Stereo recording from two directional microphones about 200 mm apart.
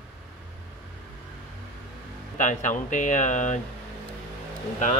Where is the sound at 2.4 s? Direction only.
40° left (ahead or behind).